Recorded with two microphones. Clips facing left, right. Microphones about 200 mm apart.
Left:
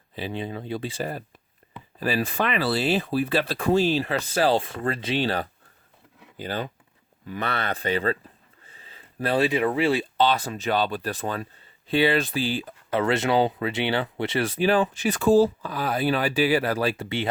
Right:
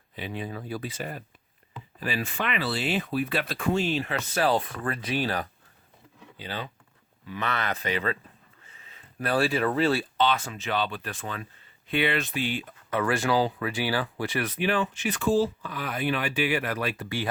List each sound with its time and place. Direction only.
0.2 s speech: 30° left (ahead or behind)
6.3 s speech: 45° left (ahead or behind)
7.3 s speech: 35° left (ahead or behind); by 10.1 s 15° left (ahead or behind)
10.2 s speech: 35° left (ahead or behind)